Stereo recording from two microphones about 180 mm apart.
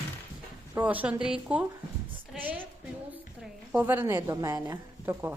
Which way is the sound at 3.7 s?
10° right (ahead or behind).